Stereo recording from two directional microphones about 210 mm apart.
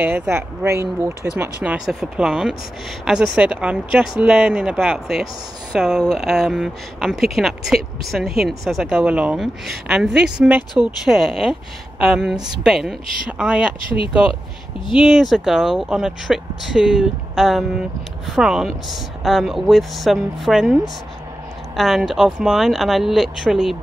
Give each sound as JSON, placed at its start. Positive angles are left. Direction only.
{"t": 0.0, "sound": "speech", "side_deg": -10}
{"t": 13.8, "sound": "speech", "side_deg": 25}
{"t": 14.9, "sound": "speech", "side_deg": 0}